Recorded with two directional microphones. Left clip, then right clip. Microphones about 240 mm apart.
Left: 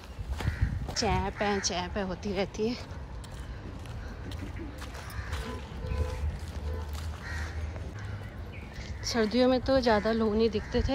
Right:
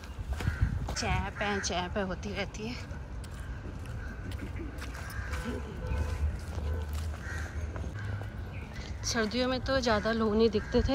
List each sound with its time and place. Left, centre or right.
0.9 s speech: left
9.0 s speech: centre